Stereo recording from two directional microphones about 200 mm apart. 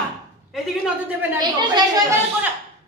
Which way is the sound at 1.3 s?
20° right (ahead or behind).